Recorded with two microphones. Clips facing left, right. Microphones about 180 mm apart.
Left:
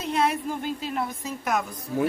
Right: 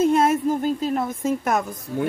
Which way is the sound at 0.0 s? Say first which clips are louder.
Right 8 dB; 45° right (ahead or behind).